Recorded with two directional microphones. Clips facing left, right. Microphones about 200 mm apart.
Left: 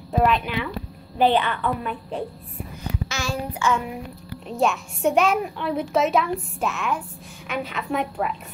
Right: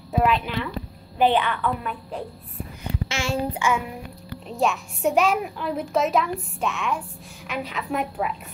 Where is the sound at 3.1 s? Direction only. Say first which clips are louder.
Right 5 dB; 25° right (ahead or behind).